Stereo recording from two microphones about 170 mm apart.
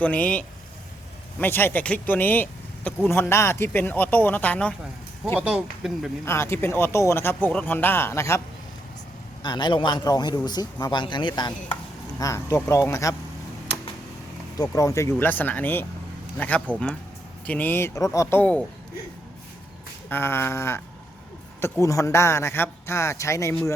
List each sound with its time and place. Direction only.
0.0 s speech: 10° left (ahead or behind)
5.4 s speech: 5° right (ahead or behind)
6.2 s speech: 15° left (ahead or behind)
9.4 s a man's voice: 25° left (ahead or behind)
14.6 s speech: 20° left (ahead or behind)
20.1 s speech: 15° left (ahead or behind)